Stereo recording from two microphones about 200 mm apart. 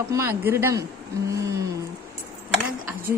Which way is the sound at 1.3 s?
15° right (ahead or behind).